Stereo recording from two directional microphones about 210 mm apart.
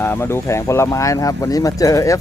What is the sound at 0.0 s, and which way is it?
Speech, 10° left (ahead or behind).